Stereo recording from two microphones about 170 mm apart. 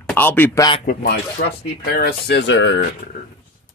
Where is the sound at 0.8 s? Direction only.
65° left (ahead or behind).